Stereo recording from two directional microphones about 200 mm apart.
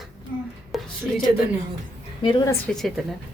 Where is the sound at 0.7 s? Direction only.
Centre (ahead or behind).